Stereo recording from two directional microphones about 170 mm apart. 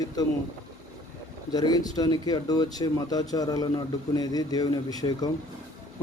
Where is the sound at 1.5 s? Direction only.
25° left (ahead or behind).